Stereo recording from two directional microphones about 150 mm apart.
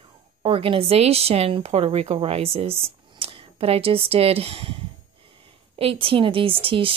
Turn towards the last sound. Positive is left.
turn(degrees=-35)  # may be behind; listen again after turning